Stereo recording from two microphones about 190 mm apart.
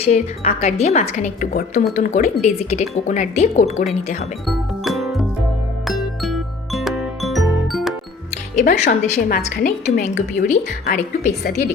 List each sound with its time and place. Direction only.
0.0 s speech: 35° left (ahead or behind)
4.4 s music: centre (ahead or behind)
8.7 s speech: 35° left (ahead or behind)